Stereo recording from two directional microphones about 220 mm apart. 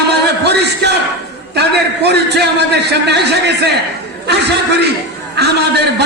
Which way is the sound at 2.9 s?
50° right (ahead or behind).